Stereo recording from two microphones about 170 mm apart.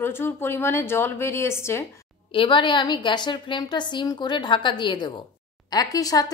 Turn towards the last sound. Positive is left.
turn(degrees=20)  # may be behind; listen again after turning